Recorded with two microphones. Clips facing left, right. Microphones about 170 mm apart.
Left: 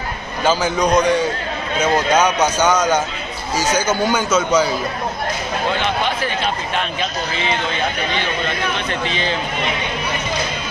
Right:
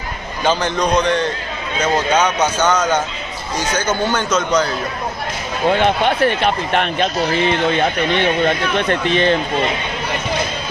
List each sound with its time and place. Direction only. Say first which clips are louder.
0.4 s a man's voice: even; 5° left (ahead or behind)
5.7 s speech: right 7 dB; 55° right (ahead or behind)